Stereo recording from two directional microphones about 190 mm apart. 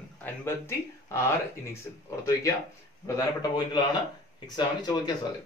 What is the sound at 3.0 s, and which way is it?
A man's voice, 20° left (ahead or behind).